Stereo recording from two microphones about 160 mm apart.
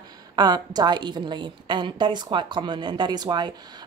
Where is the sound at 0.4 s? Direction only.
25° right (ahead or behind).